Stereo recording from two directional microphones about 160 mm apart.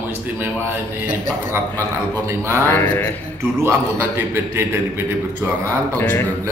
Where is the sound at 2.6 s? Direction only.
15° left (ahead or behind).